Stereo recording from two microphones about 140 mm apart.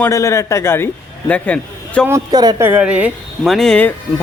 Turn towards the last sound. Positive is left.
turn(degrees=5)  # may be behind; listen again after turning